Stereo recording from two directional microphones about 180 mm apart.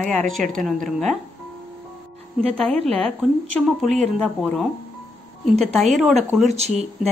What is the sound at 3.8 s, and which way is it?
Speech, centre (ahead or behind).